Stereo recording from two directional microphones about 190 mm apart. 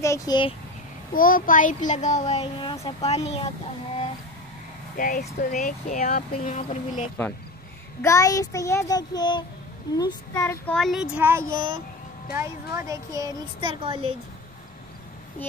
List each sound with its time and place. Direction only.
0.0 s speech: 15° left (ahead or behind)
1.1 s speech: 45° left (ahead or behind)
4.9 s speech: 45° left (ahead or behind)
8.0 s child singing: 15° left (ahead or behind)
9.9 s a child's voice: 20° left (ahead or behind); by 14.1 s 25° right (ahead or behind)